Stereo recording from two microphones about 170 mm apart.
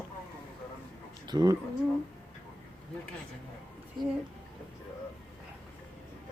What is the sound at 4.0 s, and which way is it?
Speech, 25° right (ahead or behind).